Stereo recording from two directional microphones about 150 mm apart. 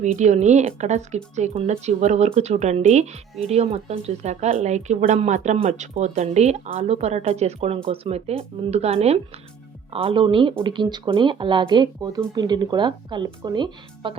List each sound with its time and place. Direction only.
0.0 s speech: 50° right (ahead or behind); by 14.2 s 30° right (ahead or behind)